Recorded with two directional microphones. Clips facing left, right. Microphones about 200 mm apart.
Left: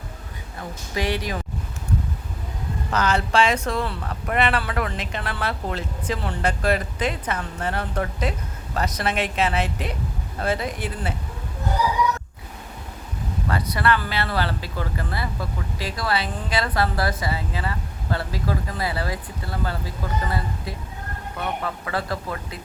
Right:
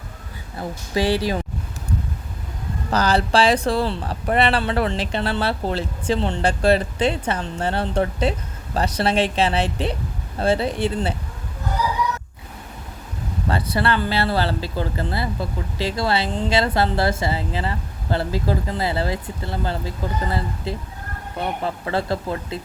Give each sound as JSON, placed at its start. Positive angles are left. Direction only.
{"t": 0.9, "sound": "speech", "side_deg": -30}
{"t": 2.9, "sound": "speech", "side_deg": -35}
{"t": 13.5, "sound": "speech", "side_deg": -30}